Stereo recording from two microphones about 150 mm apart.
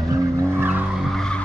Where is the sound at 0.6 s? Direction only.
10° right (ahead or behind).